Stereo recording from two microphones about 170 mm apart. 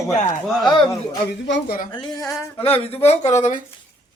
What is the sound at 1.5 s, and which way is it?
Speech, 65° left (ahead or behind).